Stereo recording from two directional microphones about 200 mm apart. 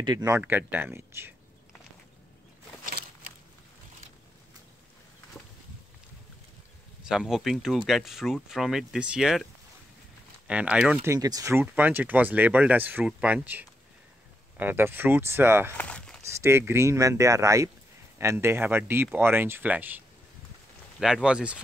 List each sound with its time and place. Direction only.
0.0 s speech: 20° right (ahead or behind)
2.8 s a sound: 45° right (ahead or behind)
7.1 s speech: centre (ahead or behind)
15.8 s walk: 5° left (ahead or behind)
16.3 s speech: 15° right (ahead or behind)
21.0 s speech: 5° right (ahead or behind)